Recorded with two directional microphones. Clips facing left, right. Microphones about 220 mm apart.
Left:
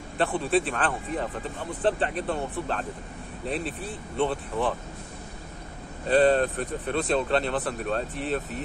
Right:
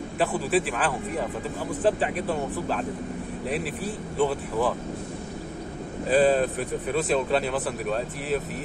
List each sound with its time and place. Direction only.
0.2 s speech: 5° right (ahead or behind)
6.0 s speech: 5° right (ahead or behind)